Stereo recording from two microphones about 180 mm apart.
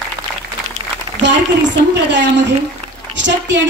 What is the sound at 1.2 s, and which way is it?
A woman's voice, 80° right.